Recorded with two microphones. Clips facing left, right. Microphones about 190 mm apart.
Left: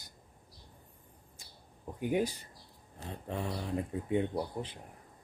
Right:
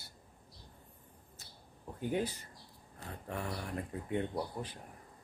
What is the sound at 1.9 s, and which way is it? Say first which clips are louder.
Speech: left 4 dB; 15° left (ahead or behind).